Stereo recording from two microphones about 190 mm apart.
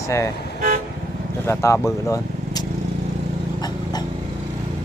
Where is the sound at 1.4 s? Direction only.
15° left (ahead or behind).